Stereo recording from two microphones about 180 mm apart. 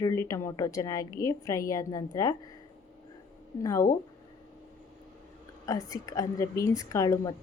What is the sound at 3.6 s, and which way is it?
Speech, 20° left (ahead or behind).